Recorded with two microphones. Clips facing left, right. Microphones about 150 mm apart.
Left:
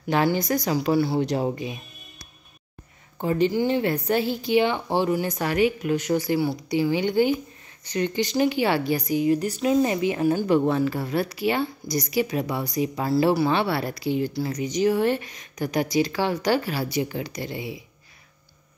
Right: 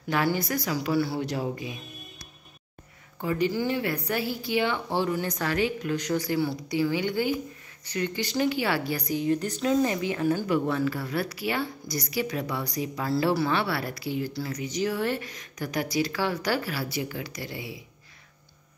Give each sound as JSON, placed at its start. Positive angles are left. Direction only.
{"t": 0.1, "sound": "a woman's voice", "side_deg": 25}
{"t": 3.2, "sound": "a woman's voice", "side_deg": 25}
{"t": 9.1, "sound": "a woman's voice", "side_deg": 10}